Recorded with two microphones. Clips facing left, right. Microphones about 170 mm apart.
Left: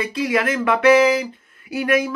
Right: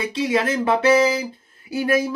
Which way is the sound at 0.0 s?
25° right (ahead or behind).